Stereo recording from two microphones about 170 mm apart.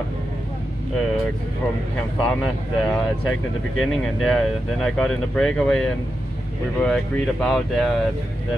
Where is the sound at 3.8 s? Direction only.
Centre (ahead or behind).